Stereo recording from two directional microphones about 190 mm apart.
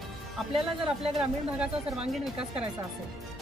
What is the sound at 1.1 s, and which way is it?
A woman's voice, 5° right (ahead or behind).